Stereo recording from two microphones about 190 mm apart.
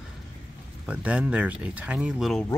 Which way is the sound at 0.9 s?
5° right (ahead or behind).